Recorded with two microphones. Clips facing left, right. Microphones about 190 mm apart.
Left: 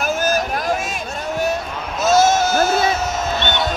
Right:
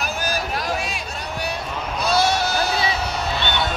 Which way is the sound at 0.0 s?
50° left (ahead or behind).